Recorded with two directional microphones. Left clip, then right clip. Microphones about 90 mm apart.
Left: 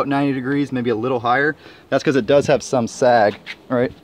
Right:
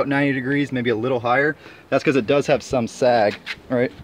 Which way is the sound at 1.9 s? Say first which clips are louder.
Left 1 dB; 20° left (ahead or behind).